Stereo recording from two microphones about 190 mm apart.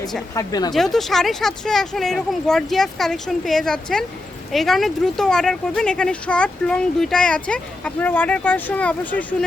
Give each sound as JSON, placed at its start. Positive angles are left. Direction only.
{"t": 0.3, "sound": "speech", "side_deg": 20}
{"t": 0.7, "sound": "speech", "side_deg": 0}